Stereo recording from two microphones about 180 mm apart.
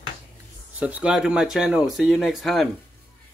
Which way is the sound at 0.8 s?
10° right (ahead or behind).